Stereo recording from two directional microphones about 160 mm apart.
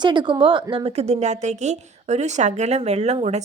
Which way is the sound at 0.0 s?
30° right (ahead or behind).